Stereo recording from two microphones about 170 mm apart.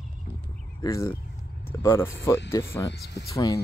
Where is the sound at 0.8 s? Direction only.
15° left (ahead or behind).